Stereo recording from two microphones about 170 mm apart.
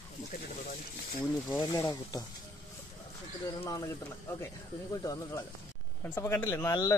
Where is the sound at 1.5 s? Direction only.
15° left (ahead or behind).